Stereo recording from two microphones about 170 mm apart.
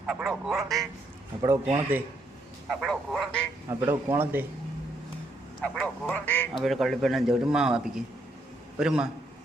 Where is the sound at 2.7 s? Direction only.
Centre (ahead or behind).